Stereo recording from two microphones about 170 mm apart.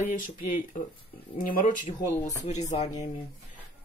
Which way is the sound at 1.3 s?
55° left (ahead or behind).